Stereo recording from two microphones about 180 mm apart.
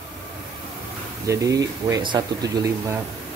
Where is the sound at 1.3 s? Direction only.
20° right (ahead or behind).